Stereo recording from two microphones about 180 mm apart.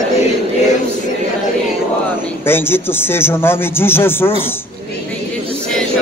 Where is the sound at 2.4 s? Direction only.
15° left (ahead or behind).